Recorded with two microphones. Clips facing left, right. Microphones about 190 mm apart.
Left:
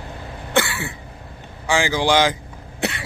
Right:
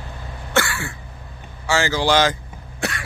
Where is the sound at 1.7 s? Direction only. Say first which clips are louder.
Even; 15° left (ahead or behind).